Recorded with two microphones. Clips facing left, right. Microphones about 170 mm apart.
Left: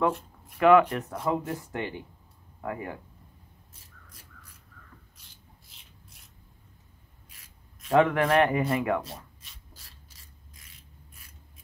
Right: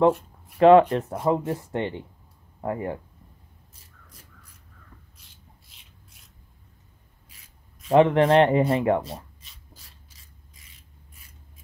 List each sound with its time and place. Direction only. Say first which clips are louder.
0.6 s speech: right 5 dB; 30° right (ahead or behind)
7.9 s speech: right 5 dB; 25° right (ahead or behind)